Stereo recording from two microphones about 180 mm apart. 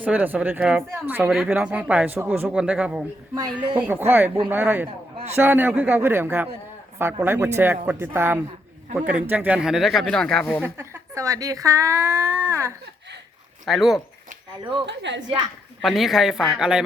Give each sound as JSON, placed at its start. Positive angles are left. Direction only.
{"t": 0.0, "sound": "speech", "side_deg": -10}
{"t": 5.1, "sound": "a sound", "side_deg": -35}
{"t": 5.4, "sound": "speech", "side_deg": -10}
{"t": 10.6, "sound": "speech", "side_deg": -15}
{"t": 13.7, "sound": "speech", "side_deg": 0}
{"t": 14.8, "sound": "a woman's voice", "side_deg": -80}
{"t": 15.8, "sound": "speech", "side_deg": 0}